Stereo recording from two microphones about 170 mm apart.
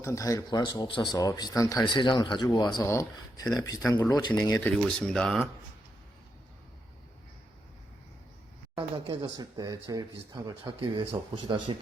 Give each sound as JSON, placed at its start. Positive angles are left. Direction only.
{"t": 0.0, "sound": "speech", "side_deg": 20}
{"t": 4.6, "sound": "speech", "side_deg": 5}
{"t": 8.7, "sound": "speech", "side_deg": -30}